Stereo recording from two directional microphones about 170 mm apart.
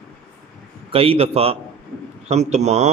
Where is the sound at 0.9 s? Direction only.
35° right (ahead or behind).